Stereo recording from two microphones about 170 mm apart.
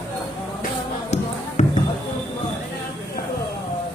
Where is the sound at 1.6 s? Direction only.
45° left (ahead or behind).